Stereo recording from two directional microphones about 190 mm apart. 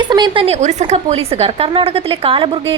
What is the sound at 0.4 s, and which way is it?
A woman's voice, 35° right (ahead or behind).